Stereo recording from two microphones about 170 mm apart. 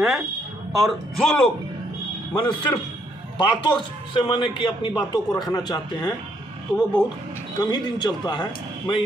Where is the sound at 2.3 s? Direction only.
25° left (ahead or behind).